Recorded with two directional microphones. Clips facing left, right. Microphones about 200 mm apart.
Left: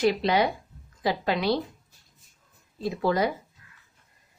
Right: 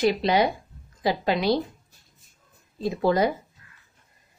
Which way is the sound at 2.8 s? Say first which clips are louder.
Right 3 dB; 25° right (ahead or behind).